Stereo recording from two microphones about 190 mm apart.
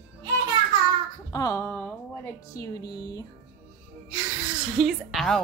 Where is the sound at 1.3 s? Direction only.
15° left (ahead or behind).